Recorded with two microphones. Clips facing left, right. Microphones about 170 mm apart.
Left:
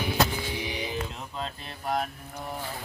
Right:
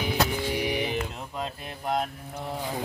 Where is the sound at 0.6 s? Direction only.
70° right (ahead or behind).